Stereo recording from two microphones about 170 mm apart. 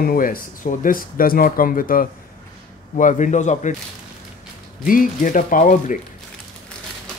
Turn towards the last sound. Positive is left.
turn(degrees=50)  # may be behind; listen again after turning